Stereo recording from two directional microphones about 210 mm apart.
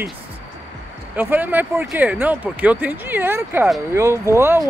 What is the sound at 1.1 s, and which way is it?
Speech, 10° right (ahead or behind).